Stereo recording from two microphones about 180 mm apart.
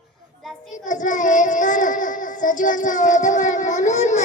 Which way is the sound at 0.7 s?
45° left (ahead or behind).